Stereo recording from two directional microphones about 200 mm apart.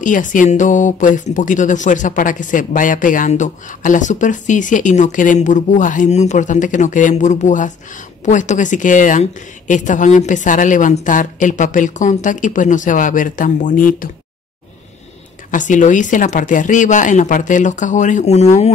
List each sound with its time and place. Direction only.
0.0 s speech: 40° left (ahead or behind)
15.5 s speech: 40° left (ahead or behind)